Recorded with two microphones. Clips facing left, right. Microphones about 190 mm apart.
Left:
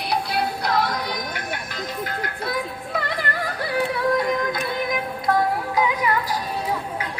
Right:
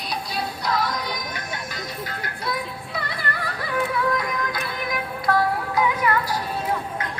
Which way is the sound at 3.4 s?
35° left (ahead or behind).